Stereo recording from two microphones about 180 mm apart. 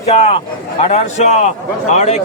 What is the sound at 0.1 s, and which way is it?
A man's voice, 35° left (ahead or behind).